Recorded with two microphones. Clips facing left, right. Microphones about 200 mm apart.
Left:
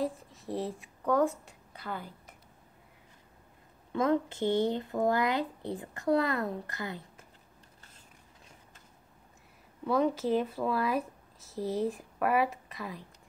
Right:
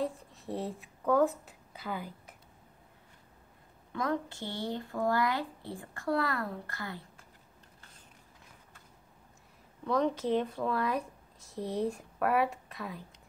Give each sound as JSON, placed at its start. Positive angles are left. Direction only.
{"t": 0.0, "sound": "a woman's voice", "side_deg": 0}
{"t": 3.9, "sound": "speech", "side_deg": 25}
{"t": 9.8, "sound": "speech", "side_deg": 5}